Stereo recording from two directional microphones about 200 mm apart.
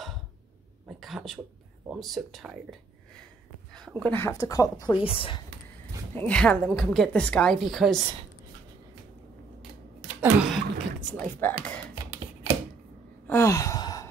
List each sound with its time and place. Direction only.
0.8 s a woman's voice: centre (ahead or behind)
3.7 s a woman's voice: centre (ahead or behind); by 5.4 s 25° left (ahead or behind)
6.1 s a woman's voice: 5° left (ahead or behind)
10.5 s a sound: 5° left (ahead or behind)
13.3 s sigh: 15° left (ahead or behind)